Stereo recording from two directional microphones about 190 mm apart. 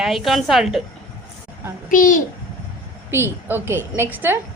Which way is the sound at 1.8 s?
45° left (ahead or behind).